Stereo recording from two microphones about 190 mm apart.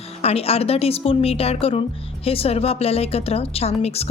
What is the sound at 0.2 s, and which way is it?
Speech, 30° left (ahead or behind).